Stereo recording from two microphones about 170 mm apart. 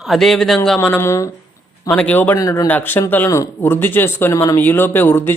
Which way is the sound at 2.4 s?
20° left (ahead or behind).